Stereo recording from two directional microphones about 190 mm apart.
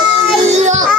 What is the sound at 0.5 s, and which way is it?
Child singing, 40° right (ahead or behind).